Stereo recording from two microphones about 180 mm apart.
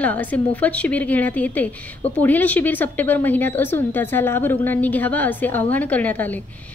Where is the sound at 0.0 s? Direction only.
10° left (ahead or behind).